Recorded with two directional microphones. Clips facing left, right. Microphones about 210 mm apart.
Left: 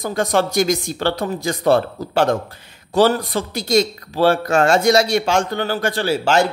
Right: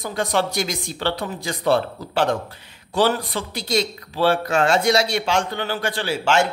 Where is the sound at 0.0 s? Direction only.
45° left (ahead or behind).